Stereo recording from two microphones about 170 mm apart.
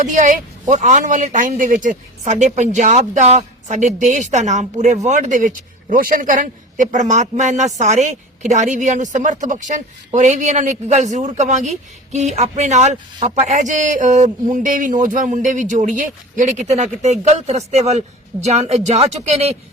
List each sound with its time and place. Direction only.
0.0 s a man's voice: 50° right (ahead or behind)